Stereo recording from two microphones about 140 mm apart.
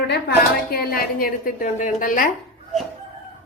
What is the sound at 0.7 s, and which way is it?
Speech, 90° left.